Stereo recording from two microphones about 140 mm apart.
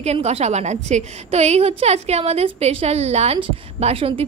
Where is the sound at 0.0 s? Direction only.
50° right (ahead or behind).